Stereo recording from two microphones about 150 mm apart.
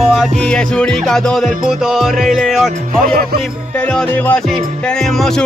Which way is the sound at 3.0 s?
90° right.